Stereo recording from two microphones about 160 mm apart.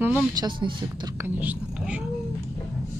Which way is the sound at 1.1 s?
10° right (ahead or behind).